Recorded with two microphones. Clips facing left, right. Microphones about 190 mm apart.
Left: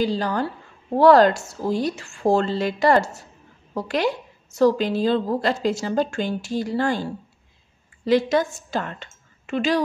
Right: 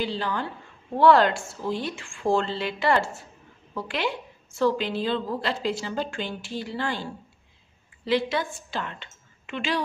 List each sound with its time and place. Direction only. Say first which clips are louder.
0.0 s a woman's voice: left 6 dB; 40° left (ahead or behind)